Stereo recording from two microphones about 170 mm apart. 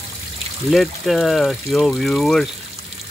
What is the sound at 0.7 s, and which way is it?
Speech, centre (ahead or behind).